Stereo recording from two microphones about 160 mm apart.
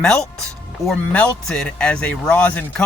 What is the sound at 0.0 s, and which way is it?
Speech, 5° left (ahead or behind).